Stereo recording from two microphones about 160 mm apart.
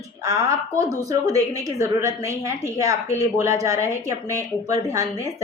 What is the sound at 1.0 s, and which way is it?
Speech, 20° right (ahead or behind).